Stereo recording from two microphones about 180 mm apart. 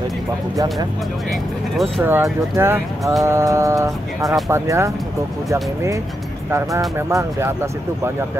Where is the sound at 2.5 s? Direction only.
15° right (ahead or behind).